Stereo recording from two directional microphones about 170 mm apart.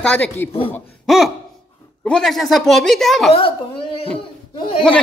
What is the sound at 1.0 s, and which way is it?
Speech, centre (ahead or behind).